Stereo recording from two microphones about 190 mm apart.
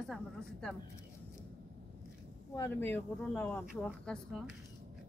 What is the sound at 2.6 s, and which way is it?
Speech, 10° left (ahead or behind).